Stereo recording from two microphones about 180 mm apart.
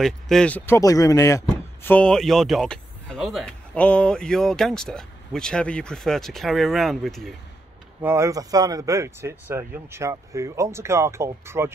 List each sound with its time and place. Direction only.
0.0 s speech: 5° left (ahead or behind)
8.0 s speech: 15° right (ahead or behind)